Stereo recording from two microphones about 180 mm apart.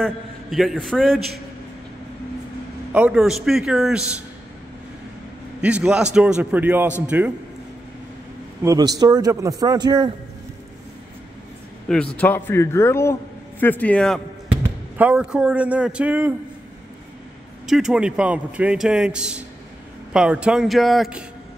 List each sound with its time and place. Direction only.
0.0 s a man's voice: centre (ahead or behind)
2.9 s a man's voice: 5° right (ahead or behind)
5.6 s a man's voice: 5° right (ahead or behind)
8.6 s a man's voice: 20° right (ahead or behind)
11.9 s a man's voice: 5° left (ahead or behind)
15.0 s a man's voice: 5° right (ahead or behind)
17.6 s a man's voice: centre (ahead or behind)